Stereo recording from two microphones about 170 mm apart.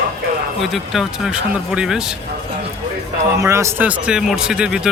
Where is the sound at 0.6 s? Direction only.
Centre (ahead or behind).